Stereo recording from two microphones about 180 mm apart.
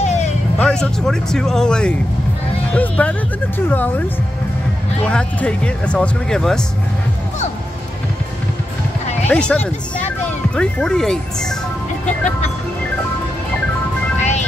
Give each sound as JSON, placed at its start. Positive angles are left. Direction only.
{"t": 0.0, "sound": "music", "side_deg": 40}
{"t": 0.6, "sound": "speech", "side_deg": 5}
{"t": 5.0, "sound": "speech", "side_deg": 5}
{"t": 9.3, "sound": "speech", "side_deg": 5}